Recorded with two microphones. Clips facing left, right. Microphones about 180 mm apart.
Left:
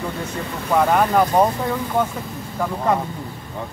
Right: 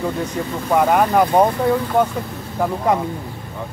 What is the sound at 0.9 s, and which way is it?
Speech, 10° right (ahead or behind).